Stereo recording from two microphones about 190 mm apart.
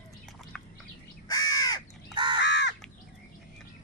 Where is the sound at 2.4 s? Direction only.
65° left (ahead or behind).